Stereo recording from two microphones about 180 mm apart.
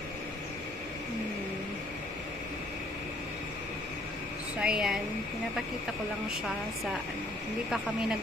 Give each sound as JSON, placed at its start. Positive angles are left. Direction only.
{"t": 4.6, "sound": "a woman's voice", "side_deg": -5}